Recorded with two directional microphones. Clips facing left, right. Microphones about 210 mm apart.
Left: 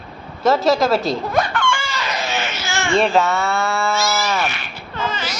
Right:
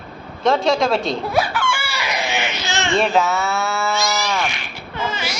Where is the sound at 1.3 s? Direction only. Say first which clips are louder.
Left 1 dB; 5° right (ahead or behind).